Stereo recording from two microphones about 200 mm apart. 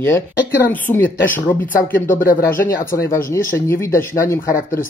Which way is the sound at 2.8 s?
45° left (ahead or behind).